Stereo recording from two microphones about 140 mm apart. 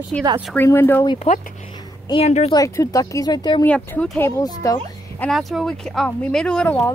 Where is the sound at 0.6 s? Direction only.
15° left (ahead or behind).